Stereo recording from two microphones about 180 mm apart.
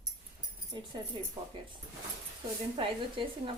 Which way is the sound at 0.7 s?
25° right (ahead or behind).